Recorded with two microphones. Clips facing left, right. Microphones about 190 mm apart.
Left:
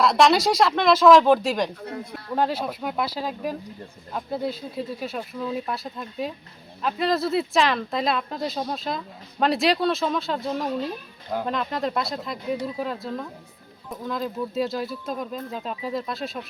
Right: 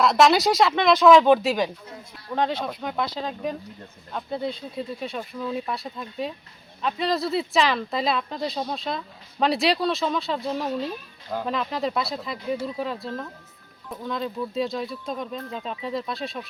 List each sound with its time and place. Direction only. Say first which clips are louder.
0.0 s speech: even; centre (ahead or behind)
1.8 s speech: left 8 dB; 65° left (ahead or behind)
2.3 s speech: left 1 dB; 5° left (ahead or behind)